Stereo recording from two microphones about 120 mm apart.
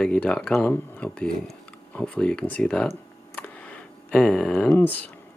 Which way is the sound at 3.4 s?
10° left (ahead or behind).